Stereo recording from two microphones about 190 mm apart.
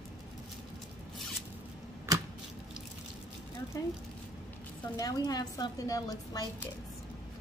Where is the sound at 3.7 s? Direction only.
15° left (ahead or behind).